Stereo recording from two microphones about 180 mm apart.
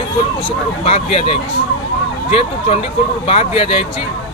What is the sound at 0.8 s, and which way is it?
Speech, 35° left (ahead or behind).